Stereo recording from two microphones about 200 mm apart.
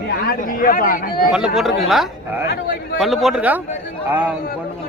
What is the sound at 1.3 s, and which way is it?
A man's voice, 5° right (ahead or behind).